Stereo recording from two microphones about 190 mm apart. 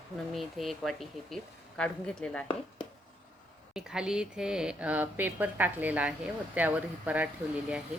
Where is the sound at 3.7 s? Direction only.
5° right (ahead or behind).